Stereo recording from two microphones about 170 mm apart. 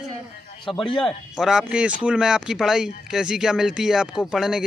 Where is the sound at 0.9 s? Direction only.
Centre (ahead or behind).